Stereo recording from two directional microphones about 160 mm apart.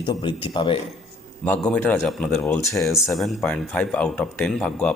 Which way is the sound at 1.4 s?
10° left (ahead or behind).